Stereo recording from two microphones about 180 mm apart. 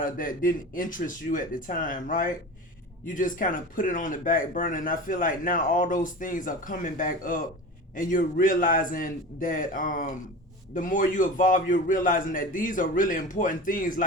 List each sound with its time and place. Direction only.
0.0 s speech: 50° left (ahead or behind)